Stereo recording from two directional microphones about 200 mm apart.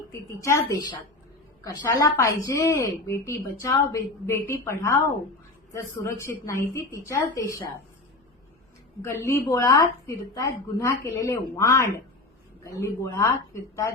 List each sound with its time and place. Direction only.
0.1 s a woman's voice: 15° left (ahead or behind)
9.0 s a woman's voice: 15° left (ahead or behind)